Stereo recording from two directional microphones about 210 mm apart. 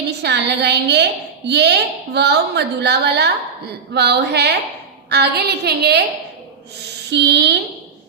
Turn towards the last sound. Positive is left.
turn(degrees=-55)  # may be behind; listen again after turning